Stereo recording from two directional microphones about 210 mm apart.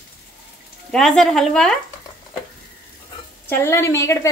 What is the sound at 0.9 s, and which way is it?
Speech, 5° left (ahead or behind).